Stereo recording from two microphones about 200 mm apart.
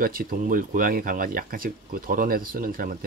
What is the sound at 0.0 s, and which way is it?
Speech, 45° right (ahead or behind).